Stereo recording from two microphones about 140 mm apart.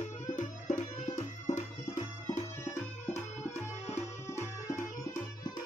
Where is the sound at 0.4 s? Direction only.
60° left (ahead or behind).